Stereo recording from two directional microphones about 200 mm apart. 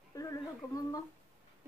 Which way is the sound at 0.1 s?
15° left (ahead or behind).